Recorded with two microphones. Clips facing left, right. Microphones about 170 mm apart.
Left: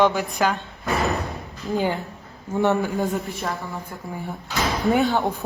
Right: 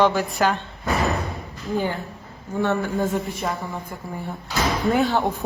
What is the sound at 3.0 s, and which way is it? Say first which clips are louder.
A woman's voice: right 1 dB; centre (ahead or behind).